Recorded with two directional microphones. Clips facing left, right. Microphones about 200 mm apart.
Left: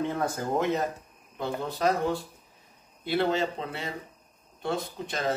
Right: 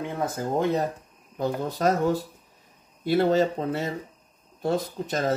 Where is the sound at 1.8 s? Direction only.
45° right (ahead or behind).